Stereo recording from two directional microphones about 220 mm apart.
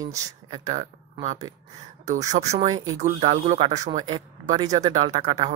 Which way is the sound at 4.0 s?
20° right (ahead or behind).